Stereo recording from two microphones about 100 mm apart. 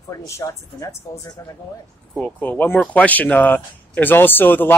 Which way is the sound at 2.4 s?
20° left (ahead or behind).